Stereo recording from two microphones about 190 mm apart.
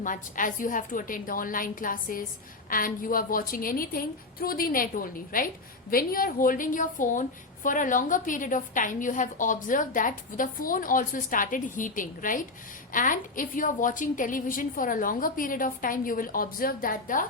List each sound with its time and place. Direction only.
0.0 s a woman's voice: 45° left (ahead or behind)